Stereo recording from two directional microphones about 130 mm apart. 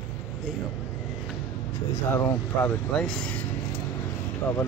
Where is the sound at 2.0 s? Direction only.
20° left (ahead or behind).